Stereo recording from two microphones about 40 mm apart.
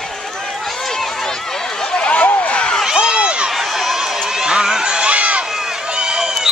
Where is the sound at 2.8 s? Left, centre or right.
Centre.